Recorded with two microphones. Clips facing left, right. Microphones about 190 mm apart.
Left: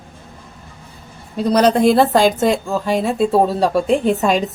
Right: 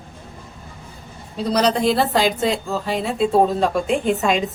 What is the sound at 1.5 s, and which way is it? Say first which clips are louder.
A woman's voice: left 5 dB; 50° left (ahead or behind).